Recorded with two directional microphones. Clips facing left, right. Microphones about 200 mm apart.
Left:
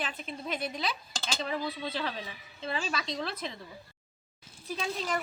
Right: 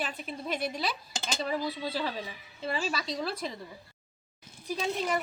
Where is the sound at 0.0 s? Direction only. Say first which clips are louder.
Right 1 dB; 5° right (ahead or behind).